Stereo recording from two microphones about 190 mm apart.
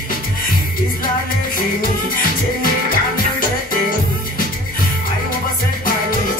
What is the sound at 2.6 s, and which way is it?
Music, 45° left (ahead or behind).